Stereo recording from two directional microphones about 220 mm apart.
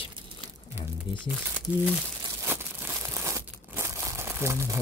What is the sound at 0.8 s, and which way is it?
Speech, 5° right (ahead or behind).